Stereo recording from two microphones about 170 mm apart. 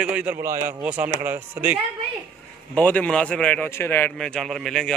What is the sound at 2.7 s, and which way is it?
A man's voice, 10° left (ahead or behind).